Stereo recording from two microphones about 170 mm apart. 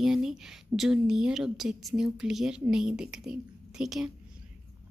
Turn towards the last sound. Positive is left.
turn(degrees=-5)  # may be behind; listen again after turning